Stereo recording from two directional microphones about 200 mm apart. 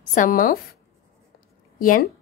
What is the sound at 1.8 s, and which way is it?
Speech, 45° left (ahead or behind).